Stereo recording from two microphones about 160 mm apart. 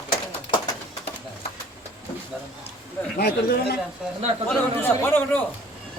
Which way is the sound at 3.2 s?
80° left.